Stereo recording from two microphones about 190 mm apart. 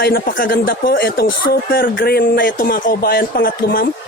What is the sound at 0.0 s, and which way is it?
Speech, 55° left (ahead or behind).